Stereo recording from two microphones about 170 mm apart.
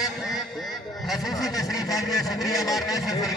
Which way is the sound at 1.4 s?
20° left (ahead or behind).